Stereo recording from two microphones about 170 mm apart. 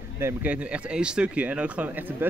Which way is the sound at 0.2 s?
10° right (ahead or behind).